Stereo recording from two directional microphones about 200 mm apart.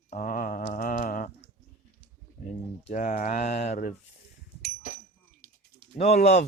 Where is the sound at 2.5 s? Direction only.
40° left (ahead or behind).